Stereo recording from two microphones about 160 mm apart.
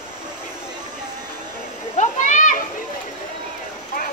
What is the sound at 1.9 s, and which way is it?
Children playing, 50° left (ahead or behind).